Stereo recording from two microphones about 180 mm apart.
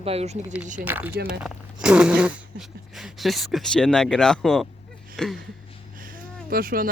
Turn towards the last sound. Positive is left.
turn(degrees=-55)  # may be behind; listen again after turning